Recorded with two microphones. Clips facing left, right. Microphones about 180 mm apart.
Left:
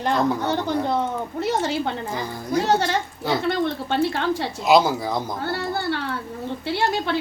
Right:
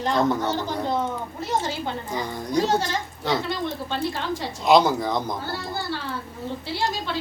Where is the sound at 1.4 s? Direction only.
70° left (ahead or behind).